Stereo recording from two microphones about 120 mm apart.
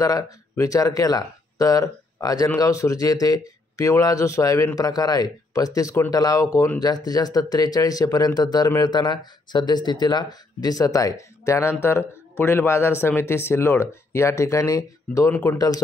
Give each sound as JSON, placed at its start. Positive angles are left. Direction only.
{"t": 0.0, "sound": "speech", "side_deg": 30}